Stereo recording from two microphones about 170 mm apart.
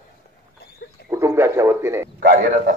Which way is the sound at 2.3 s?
60° right (ahead or behind).